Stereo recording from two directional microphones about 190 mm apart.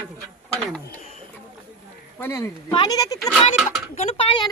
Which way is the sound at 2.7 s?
25° left (ahead or behind).